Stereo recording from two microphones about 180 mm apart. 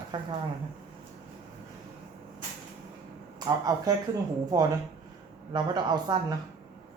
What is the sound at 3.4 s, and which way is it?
Speech, 20° right (ahead or behind).